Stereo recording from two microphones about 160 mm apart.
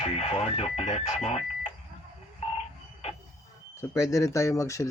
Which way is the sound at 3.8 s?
20° left (ahead or behind).